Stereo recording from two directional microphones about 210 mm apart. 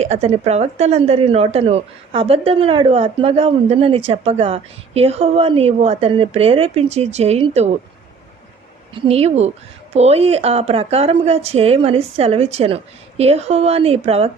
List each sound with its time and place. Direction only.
0.0 s a woman's voice: 30° right (ahead or behind)
9.0 s a woman's voice: 30° right (ahead or behind)